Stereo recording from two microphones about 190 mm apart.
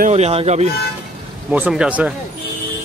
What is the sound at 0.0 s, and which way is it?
Speech, 35° right (ahead or behind).